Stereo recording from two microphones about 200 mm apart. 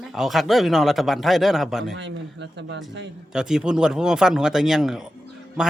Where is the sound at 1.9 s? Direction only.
60° right (ahead or behind).